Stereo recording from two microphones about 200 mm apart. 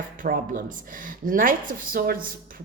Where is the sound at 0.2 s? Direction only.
40° right (ahead or behind).